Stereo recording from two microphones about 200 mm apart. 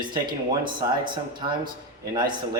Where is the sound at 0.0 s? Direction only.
20° right (ahead or behind).